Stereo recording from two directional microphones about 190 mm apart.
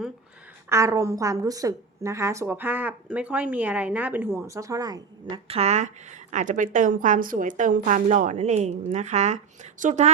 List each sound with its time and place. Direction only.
0.7 s a woman's voice: 15° right (ahead or behind)
5.5 s a woman's voice: 35° right (ahead or behind)